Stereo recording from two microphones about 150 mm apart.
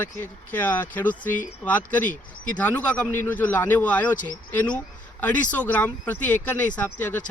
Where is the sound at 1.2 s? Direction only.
60° left (ahead or behind).